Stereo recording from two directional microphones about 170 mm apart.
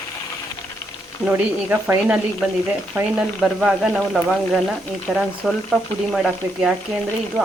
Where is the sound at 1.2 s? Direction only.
10° right (ahead or behind).